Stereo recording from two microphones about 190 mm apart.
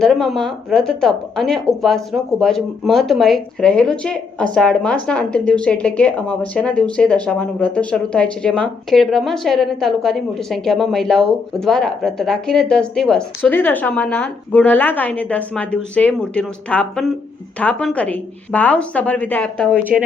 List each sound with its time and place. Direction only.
0.0 s a woman's voice: centre (ahead or behind)
19.7 s speech: 10° right (ahead or behind)